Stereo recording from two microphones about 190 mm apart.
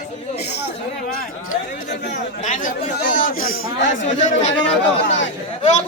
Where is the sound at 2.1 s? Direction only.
40° left (ahead or behind).